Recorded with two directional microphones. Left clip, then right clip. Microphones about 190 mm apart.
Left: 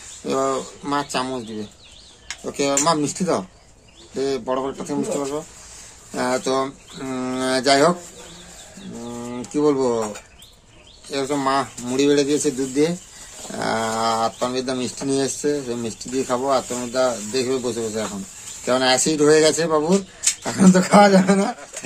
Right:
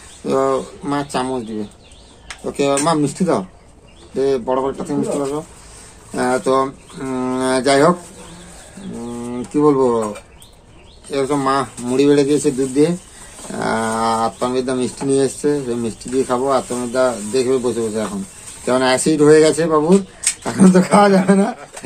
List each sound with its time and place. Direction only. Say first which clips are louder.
0.2 s speech: right 5 dB; 10° left (ahead or behind)
2.4 s speech: right 3 dB; 10° left (ahead or behind)
9.1 s bird: right 5 dB; 10° left (ahead or behind)
11.1 s speech: right 4 dB; 5° left (ahead or behind); by 21.5 s 30° left (ahead or behind)